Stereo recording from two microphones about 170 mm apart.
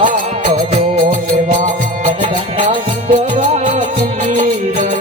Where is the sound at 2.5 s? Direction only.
50° right (ahead or behind).